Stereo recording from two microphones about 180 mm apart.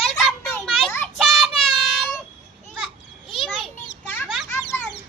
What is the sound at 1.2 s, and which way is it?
Child singing, centre (ahead or behind).